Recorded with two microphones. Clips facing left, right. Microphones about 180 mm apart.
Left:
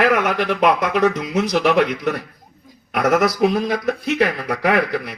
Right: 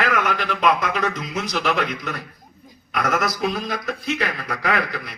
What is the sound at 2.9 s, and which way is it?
Speech, 60° left (ahead or behind).